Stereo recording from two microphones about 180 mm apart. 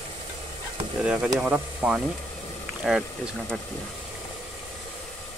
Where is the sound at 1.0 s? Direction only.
5° right (ahead or behind).